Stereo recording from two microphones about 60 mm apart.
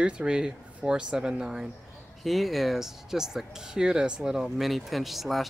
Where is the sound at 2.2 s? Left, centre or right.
Centre.